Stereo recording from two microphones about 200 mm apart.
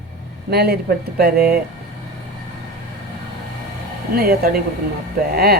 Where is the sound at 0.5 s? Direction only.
55° right (ahead or behind).